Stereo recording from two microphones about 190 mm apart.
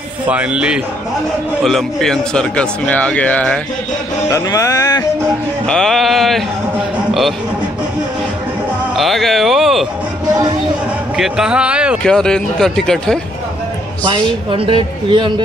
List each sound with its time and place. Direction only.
0.3 s speech: 5° right (ahead or behind)
4.3 s music: 15° left (ahead or behind)
5.7 s speech: centre (ahead or behind)
8.9 s speech: centre (ahead or behind)
11.1 s speech: centre (ahead or behind)
14.0 s speech: 25° right (ahead or behind)